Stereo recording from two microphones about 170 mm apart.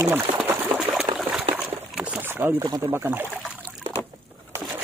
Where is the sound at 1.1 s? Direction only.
35° right (ahead or behind).